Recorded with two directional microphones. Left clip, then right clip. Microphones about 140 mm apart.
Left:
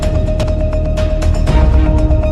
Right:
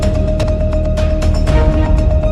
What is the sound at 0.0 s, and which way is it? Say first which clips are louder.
Music: right 1 dB; centre (ahead or behind).